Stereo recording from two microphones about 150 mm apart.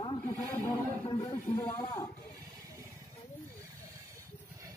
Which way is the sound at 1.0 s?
30° left (ahead or behind).